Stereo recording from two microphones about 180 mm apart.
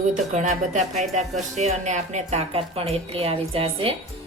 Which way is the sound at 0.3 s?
40° right (ahead or behind).